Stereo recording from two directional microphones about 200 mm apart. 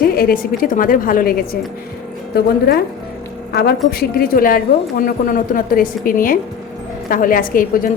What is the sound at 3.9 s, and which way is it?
A woman's voice, 50° left (ahead or behind).